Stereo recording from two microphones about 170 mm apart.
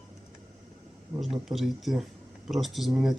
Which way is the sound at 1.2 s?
Centre (ahead or behind).